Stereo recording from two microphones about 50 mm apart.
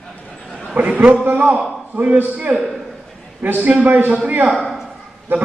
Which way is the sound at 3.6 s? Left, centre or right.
Right.